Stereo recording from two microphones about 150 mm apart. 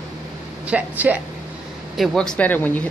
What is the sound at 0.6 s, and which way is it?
Speech, 10° right (ahead or behind).